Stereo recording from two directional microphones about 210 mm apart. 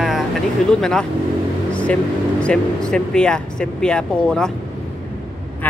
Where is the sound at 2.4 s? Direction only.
5° left (ahead or behind).